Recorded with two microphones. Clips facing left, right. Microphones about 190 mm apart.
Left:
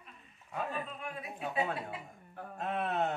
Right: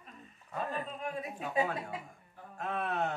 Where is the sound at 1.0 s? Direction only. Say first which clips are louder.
Right 2 dB; 40° right (ahead or behind).